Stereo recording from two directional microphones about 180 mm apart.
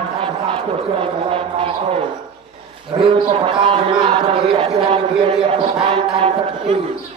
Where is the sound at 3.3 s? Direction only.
30° right (ahead or behind).